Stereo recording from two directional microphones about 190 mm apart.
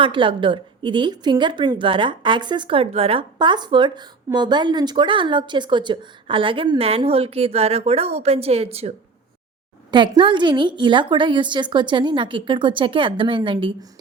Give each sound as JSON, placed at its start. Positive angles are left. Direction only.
{"t": 0.0, "sound": "a woman's voice", "side_deg": -25}
{"t": 9.9, "sound": "a woman's voice", "side_deg": -25}